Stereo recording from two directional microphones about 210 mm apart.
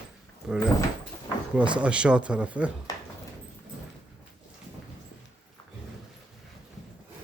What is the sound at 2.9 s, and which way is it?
Dog, 15° left (ahead or behind).